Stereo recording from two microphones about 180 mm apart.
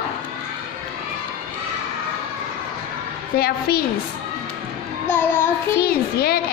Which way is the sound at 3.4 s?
60° left (ahead or behind).